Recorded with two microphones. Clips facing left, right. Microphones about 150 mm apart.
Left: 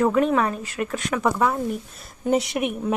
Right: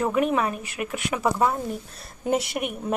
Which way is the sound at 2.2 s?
Centre (ahead or behind).